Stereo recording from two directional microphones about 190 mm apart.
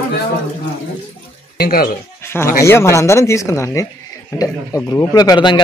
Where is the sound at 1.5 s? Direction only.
50° left (ahead or behind).